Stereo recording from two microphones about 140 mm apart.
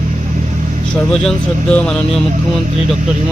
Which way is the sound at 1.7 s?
5° left (ahead or behind).